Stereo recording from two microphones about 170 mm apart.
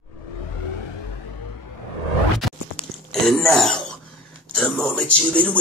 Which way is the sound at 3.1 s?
5° left (ahead or behind).